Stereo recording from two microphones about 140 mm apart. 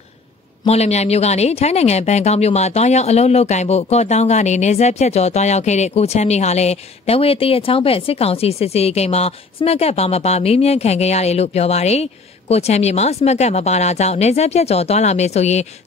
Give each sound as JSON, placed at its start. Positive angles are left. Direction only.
{"t": 0.7, "sound": "a woman's voice", "side_deg": 50}